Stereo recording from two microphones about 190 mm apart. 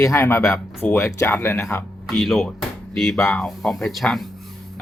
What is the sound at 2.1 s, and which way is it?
Speech, centre (ahead or behind).